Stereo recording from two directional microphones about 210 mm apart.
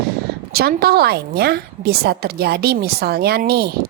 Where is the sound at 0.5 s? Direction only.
45° right (ahead or behind).